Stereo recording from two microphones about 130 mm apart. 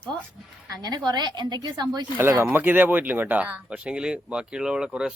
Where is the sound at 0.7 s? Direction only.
30° right (ahead or behind).